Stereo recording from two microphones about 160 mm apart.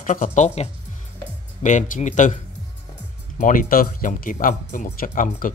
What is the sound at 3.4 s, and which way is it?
Speech, 60° left (ahead or behind).